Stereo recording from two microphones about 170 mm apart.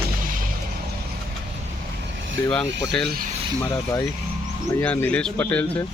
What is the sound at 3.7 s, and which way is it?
Speech, 20° left (ahead or behind).